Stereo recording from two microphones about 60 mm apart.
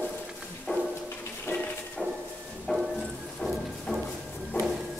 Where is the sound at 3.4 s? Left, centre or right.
Left.